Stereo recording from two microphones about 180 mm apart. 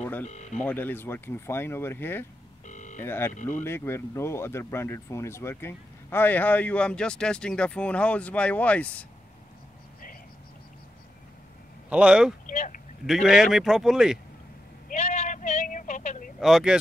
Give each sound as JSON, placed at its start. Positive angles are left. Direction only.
{"t": 0.0, "sound": "speech", "side_deg": 10}
{"t": 0.3, "sound": "speech", "side_deg": 40}
{"t": 0.6, "sound": "speech", "side_deg": 10}
{"t": 2.6, "sound": "a sound", "side_deg": 45}
{"t": 3.0, "sound": "speech", "side_deg": 10}
{"t": 11.9, "sound": "a man's voice", "side_deg": -5}
{"t": 12.4, "sound": "vehicle", "side_deg": 45}
{"t": 13.0, "sound": "a man's voice", "side_deg": 0}
{"t": 14.9, "sound": "vehicle", "side_deg": 40}
{"t": 16.3, "sound": "speech", "side_deg": 0}